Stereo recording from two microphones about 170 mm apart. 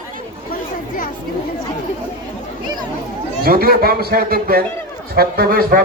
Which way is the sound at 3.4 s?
60° right (ahead or behind).